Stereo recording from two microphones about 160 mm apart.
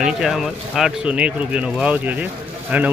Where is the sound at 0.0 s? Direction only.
5° right (ahead or behind).